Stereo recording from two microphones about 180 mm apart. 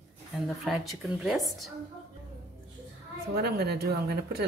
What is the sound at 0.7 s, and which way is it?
Speech, centre (ahead or behind).